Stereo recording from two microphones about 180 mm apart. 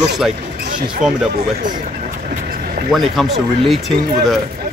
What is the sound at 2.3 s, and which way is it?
Vehicle, 55° right (ahead or behind).